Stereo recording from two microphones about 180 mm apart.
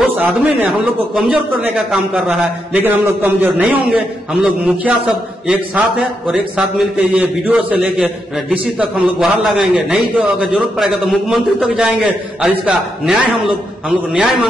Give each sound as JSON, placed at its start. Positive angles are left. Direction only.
{"t": 0.0, "sound": "a man's voice", "side_deg": -10}